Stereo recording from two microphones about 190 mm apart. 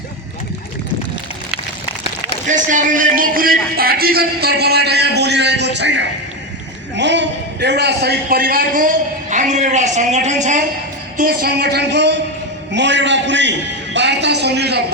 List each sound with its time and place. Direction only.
2.5 s a man's voice: 40° right (ahead or behind)
11.2 s a man's voice: 50° right (ahead or behind)